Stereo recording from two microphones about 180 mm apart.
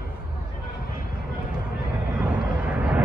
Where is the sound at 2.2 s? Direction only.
10° right (ahead or behind).